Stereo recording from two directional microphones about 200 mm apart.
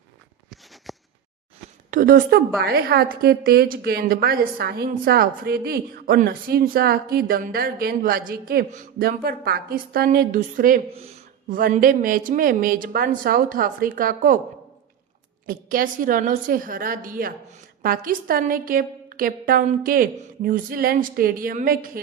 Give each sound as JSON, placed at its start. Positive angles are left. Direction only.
{"t": 0.5, "sound": "a sound", "side_deg": 0}
{"t": 1.9, "sound": "a woman's voice", "side_deg": -45}
{"t": 10.9, "sound": "speech", "side_deg": -30}
{"t": 11.4, "sound": "a woman's voice", "side_deg": -45}
{"t": 15.4, "sound": "a woman's voice", "side_deg": -45}